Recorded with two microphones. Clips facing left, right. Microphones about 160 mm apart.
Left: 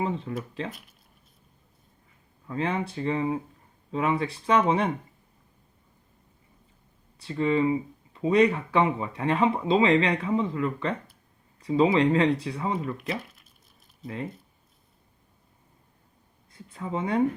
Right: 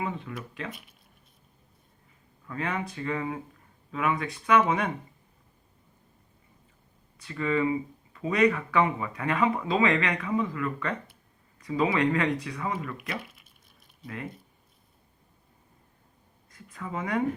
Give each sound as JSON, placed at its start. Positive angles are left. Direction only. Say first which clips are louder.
{"t": 0.0, "sound": "speech", "louder": "left 4 dB", "side_deg": 30}
{"t": 2.5, "sound": "speech", "louder": "left 4 dB", "side_deg": 30}
{"t": 7.2, "sound": "speech", "louder": "left 3 dB", "side_deg": 30}
{"t": 13.2, "sound": "a sound", "louder": "right 2 dB", "side_deg": 0}
{"t": 16.5, "sound": "speech", "louder": "left 4 dB", "side_deg": 30}